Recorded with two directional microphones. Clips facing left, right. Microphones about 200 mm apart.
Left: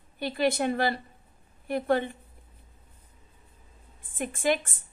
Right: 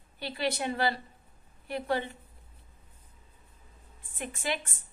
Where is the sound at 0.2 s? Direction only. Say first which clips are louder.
Left 6 dB; 50° left (ahead or behind).